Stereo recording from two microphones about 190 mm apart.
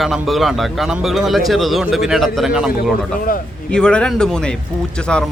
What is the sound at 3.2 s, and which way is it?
Speech, 45° left (ahead or behind).